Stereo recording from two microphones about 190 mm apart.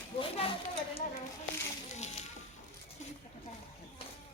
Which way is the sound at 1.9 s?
40° left (ahead or behind).